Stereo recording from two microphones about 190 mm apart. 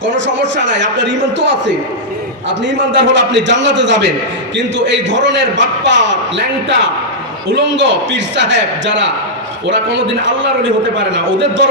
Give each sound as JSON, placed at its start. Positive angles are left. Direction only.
{"t": 0.0, "sound": "a man's voice", "side_deg": -70}
{"t": 7.5, "sound": "a man's voice", "side_deg": -70}